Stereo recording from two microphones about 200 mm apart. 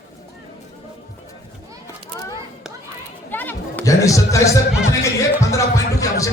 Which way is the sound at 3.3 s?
10° left (ahead or behind).